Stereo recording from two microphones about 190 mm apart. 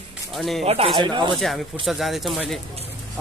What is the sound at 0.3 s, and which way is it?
Speech, centre (ahead or behind).